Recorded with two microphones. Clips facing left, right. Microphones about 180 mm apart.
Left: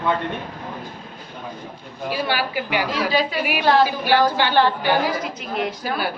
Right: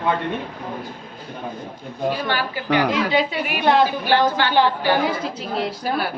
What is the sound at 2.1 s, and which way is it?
Speech, 10° left (ahead or behind).